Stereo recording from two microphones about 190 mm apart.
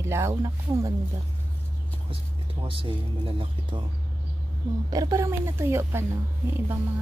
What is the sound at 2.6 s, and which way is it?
Speech, 30° right (ahead or behind).